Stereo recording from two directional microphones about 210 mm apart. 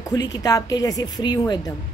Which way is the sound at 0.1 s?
20° left (ahead or behind).